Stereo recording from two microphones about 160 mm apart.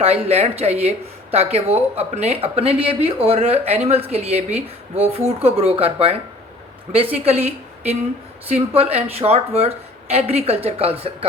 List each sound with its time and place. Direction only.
0.0 s speech: 40° right (ahead or behind)
8.4 s speech: 40° right (ahead or behind)